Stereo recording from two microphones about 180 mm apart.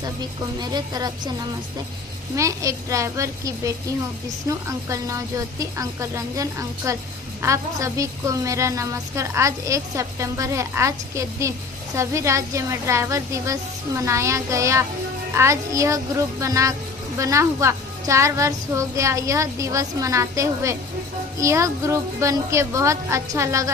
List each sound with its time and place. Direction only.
0.6 s speech: 20° right (ahead or behind)
2.3 s a woman's voice: 15° right (ahead or behind)